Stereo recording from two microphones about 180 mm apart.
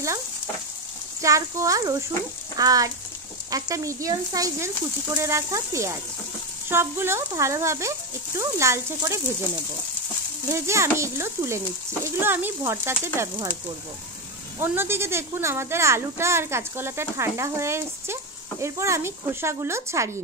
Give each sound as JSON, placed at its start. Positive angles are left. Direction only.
{"t": 1.2, "sound": "a child's voice", "side_deg": -20}
{"t": 10.5, "sound": "a child's voice", "side_deg": -15}
{"t": 14.6, "sound": "a child's voice", "side_deg": -15}